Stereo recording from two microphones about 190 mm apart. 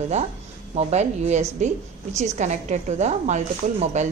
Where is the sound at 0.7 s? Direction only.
35° right (ahead or behind).